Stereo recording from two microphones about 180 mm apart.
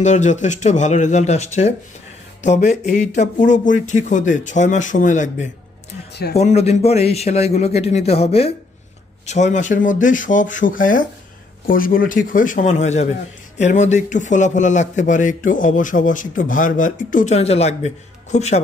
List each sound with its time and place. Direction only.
0.0 s a man's voice: 40° left (ahead or behind)